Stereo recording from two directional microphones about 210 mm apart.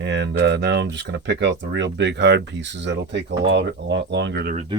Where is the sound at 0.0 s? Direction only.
55° right (ahead or behind).